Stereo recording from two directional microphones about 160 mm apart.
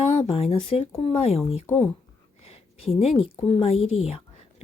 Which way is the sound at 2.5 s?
40° left (ahead or behind).